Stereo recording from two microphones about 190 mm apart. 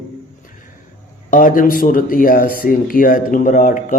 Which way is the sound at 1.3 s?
45° left (ahead or behind).